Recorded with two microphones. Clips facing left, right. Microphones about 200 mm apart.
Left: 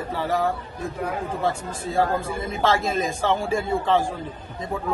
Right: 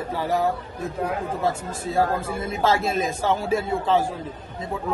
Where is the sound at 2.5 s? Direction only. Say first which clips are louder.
Even; 5° right (ahead or behind).